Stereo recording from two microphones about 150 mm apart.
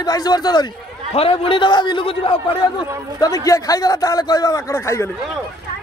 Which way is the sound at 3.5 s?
25° left (ahead or behind).